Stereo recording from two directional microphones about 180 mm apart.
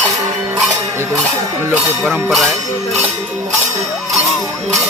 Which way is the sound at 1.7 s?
Centre (ahead or behind).